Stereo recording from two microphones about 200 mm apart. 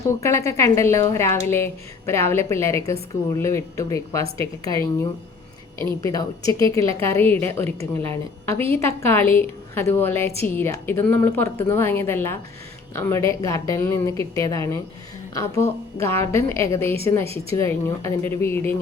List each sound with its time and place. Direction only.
0.1 s a woman's voice: 15° left (ahead or behind)
4.2 s speech: 30° right (ahead or behind)
4.7 s a woman's voice: 15° left (ahead or behind)
16.0 s a woman's voice: 10° left (ahead or behind)